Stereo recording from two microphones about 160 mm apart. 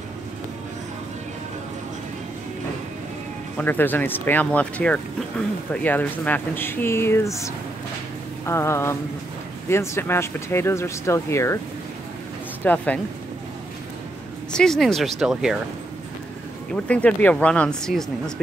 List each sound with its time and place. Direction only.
3.5 s speech: 10° left (ahead or behind)
8.5 s speech: 15° left (ahead or behind)
12.6 s speech: 10° left (ahead or behind)
14.5 s speech: 5° left (ahead or behind)
16.8 s speech: 10° left (ahead or behind)